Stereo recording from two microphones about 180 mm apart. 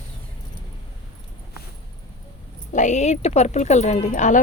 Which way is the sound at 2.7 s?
40° left (ahead or behind).